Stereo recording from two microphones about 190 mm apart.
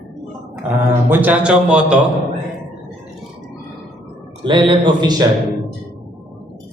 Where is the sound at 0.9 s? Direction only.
10° right (ahead or behind).